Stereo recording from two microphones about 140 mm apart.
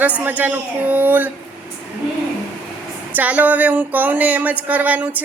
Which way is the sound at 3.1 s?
10° right (ahead or behind).